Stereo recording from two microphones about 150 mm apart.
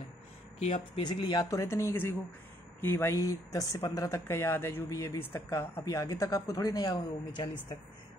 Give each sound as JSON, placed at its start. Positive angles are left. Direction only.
{"t": 0.7, "sound": "speech", "side_deg": 40}